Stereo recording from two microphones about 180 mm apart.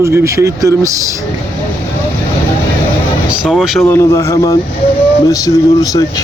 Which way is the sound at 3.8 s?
15° left (ahead or behind).